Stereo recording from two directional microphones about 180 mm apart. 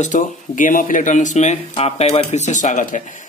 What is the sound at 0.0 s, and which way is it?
Speech, 45° left (ahead or behind).